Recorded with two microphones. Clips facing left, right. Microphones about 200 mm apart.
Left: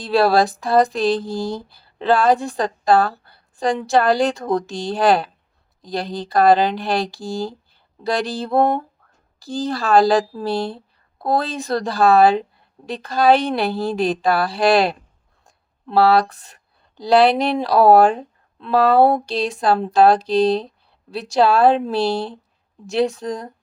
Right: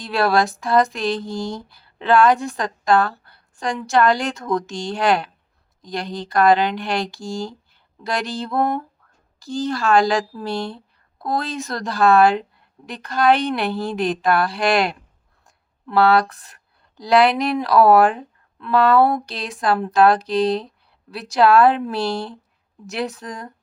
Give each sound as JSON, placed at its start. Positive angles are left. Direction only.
{"t": 0.0, "sound": "a woman's voice", "side_deg": 30}
{"t": 17.0, "sound": "a woman's voice", "side_deg": 30}